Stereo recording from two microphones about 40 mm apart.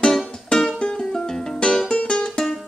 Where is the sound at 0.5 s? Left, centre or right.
Centre.